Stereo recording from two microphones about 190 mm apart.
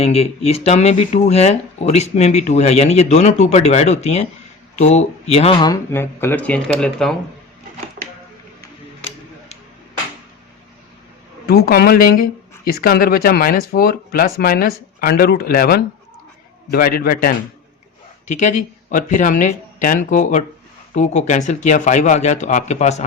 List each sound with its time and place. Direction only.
0.0 s speech: 35° left (ahead or behind); by 7.2 s 5° left (ahead or behind)
11.4 s speech: 55° left (ahead or behind)
18.3 s speech: 40° left (ahead or behind)